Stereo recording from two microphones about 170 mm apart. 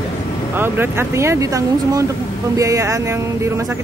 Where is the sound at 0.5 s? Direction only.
10° right (ahead or behind).